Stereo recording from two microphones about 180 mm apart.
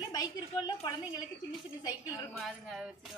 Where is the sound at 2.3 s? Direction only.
Centre (ahead or behind).